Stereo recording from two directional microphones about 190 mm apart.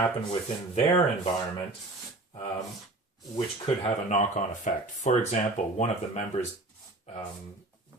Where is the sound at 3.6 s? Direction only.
35° left (ahead or behind).